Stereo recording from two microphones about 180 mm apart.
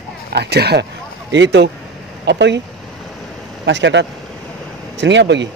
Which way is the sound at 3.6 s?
80° right.